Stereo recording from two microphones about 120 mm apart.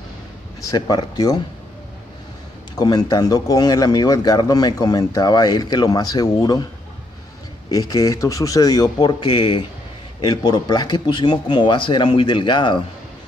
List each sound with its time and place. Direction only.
0.6 s a man's voice: 30° left (ahead or behind)
2.8 s a man's voice: 35° left (ahead or behind)
7.7 s a man's voice: 30° left (ahead or behind)